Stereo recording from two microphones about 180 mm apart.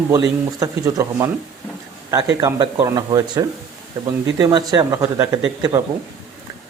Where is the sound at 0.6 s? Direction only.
15° right (ahead or behind).